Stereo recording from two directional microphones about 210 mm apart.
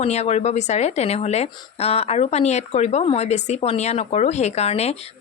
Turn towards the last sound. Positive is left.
turn(degrees=30)  # may be behind; listen again after turning